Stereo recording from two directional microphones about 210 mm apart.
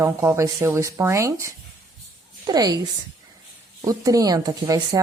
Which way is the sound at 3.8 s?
15° right (ahead or behind).